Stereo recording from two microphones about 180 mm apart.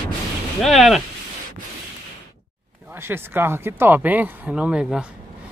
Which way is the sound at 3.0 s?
10° right (ahead or behind).